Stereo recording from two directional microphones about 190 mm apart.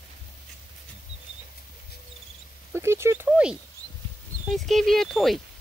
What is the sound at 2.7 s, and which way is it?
Speech, 15° right (ahead or behind).